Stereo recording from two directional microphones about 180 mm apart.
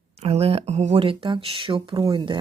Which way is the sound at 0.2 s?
35° right (ahead or behind).